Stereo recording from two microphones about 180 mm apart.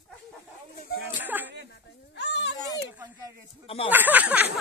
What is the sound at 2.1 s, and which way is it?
Children playing, 75° left (ahead or behind).